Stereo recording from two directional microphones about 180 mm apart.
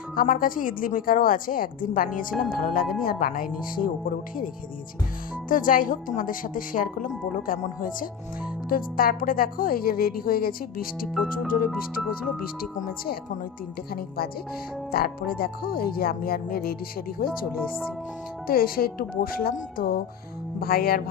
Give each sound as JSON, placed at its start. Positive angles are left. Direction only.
{"t": 0.2, "sound": "a woman's voice", "side_deg": 50}
{"t": 2.3, "sound": "speech", "side_deg": 0}
{"t": 2.6, "sound": "a woman's voice", "side_deg": 50}
{"t": 5.5, "sound": "a woman's voice", "side_deg": 50}
{"t": 11.7, "sound": "speech", "side_deg": 0}
{"t": 14.9, "sound": "speech", "side_deg": 55}
{"t": 18.4, "sound": "speech", "side_deg": 55}